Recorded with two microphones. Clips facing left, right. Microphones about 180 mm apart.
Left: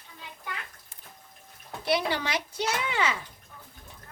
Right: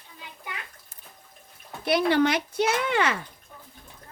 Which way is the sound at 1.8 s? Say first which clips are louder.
Right 6 dB; 55° right (ahead or behind).